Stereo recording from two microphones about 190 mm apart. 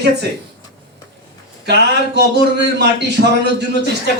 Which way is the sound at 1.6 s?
60° right (ahead or behind).